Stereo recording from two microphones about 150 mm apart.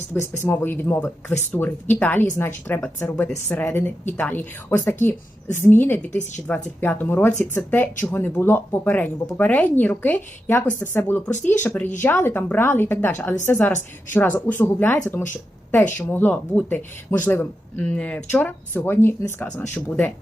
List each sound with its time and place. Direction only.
0.2 s speech: 15° left (ahead or behind)